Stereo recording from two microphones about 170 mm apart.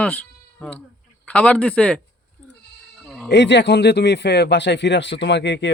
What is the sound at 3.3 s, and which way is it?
A man's voice, 90° left.